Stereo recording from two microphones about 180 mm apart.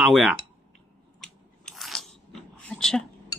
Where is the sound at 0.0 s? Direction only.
Centre (ahead or behind).